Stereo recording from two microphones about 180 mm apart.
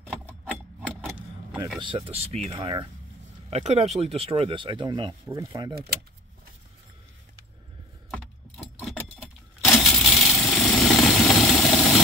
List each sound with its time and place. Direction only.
0.0 s a sound: 10° right (ahead or behind)
0.6 s keys jangling: 10° right (ahead or behind)
1.8 s speech: 30° right (ahead or behind)
8.1 s keys jangling: centre (ahead or behind)
9.7 s engine: centre (ahead or behind)